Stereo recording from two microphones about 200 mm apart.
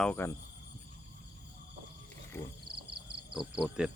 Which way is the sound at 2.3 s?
15° left (ahead or behind).